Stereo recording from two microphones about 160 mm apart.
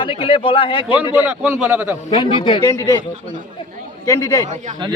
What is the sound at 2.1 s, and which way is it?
Speech, 35° left (ahead or behind).